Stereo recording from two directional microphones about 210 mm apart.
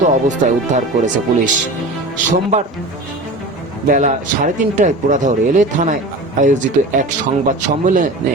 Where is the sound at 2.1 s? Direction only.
35° right (ahead or behind).